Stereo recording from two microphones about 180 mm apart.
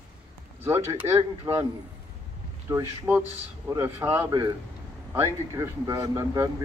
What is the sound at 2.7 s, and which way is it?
A man's voice, 15° right (ahead or behind).